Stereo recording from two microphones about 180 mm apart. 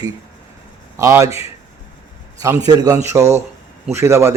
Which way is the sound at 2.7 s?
20° right (ahead or behind).